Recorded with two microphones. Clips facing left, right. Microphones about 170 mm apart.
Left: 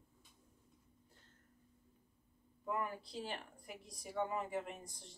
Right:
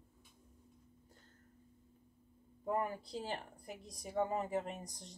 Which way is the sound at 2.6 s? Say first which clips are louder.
Right 4 dB; 40° right (ahead or behind).